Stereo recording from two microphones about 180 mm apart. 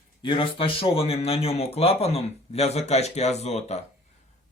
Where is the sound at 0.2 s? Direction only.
25° left (ahead or behind).